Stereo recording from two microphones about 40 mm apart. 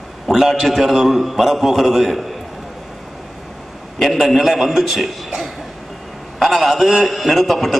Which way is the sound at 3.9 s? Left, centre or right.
Centre.